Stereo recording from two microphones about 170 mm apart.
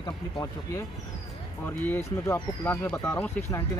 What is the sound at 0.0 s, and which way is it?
Speech, 20° left (ahead or behind).